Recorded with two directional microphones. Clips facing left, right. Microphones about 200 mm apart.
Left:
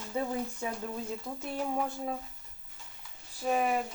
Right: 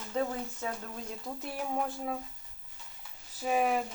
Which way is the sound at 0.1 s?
10° left (ahead or behind).